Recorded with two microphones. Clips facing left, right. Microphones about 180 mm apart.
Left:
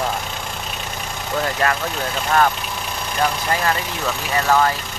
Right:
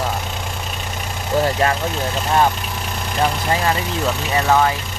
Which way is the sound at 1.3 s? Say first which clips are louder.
Right 3 dB; 25° right (ahead or behind).